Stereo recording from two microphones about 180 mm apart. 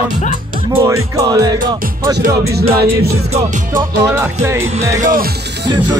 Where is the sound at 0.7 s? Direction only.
20° right (ahead or behind).